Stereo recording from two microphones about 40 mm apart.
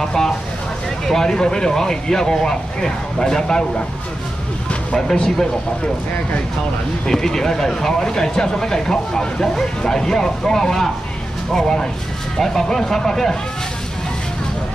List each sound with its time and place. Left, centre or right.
0.0 s speech: centre
5.1 s speech: centre
7.1 s speech: centre